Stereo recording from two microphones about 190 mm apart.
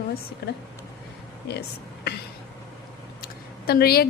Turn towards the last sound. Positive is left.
turn(degrees=55)  # may be behind; listen again after turning